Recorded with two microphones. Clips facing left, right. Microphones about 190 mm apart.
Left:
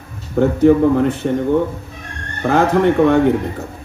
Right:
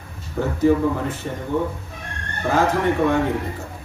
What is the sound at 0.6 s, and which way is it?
Speech, 60° left (ahead or behind).